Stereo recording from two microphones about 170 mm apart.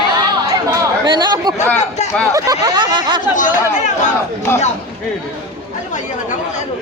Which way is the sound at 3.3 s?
50° left (ahead or behind).